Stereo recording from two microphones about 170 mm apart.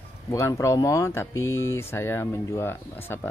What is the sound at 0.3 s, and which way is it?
Speech, 20° left (ahead or behind).